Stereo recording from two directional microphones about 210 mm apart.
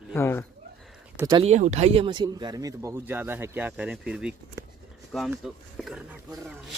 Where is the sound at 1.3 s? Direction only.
30° right (ahead or behind); by 6.2 s 5° right (ahead or behind).